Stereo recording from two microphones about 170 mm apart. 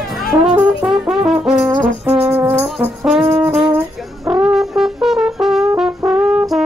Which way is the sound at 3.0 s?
5° right (ahead or behind).